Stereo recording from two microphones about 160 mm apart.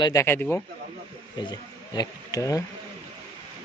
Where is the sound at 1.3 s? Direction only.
25° left (ahead or behind).